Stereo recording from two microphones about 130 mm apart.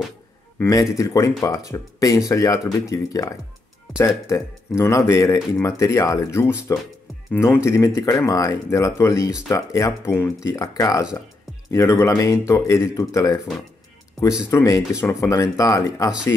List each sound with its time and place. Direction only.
0.6 s speech: 25° left (ahead or behind)
14.5 s speech: 25° left (ahead or behind)